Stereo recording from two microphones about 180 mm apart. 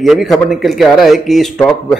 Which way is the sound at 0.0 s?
Centre (ahead or behind).